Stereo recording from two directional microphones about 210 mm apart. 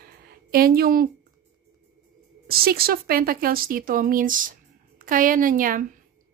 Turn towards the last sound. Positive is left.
turn(degrees=-40)  # may be behind; listen again after turning